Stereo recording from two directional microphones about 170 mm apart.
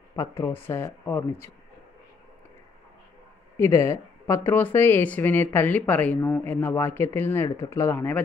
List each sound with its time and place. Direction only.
0.1 s speech: 20° left (ahead or behind)
3.5 s speech: 15° left (ahead or behind)